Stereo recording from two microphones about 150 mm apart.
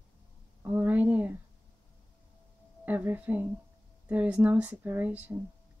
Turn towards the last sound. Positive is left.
turn(degrees=-10)  # may be behind; listen again after turning